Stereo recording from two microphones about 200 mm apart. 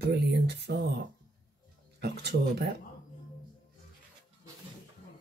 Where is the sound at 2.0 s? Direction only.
55° right (ahead or behind).